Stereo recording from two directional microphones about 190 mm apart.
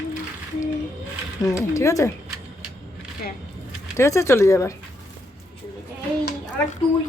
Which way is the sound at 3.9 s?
15° left (ahead or behind).